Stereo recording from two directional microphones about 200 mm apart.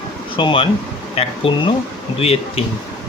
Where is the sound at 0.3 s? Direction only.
25° left (ahead or behind).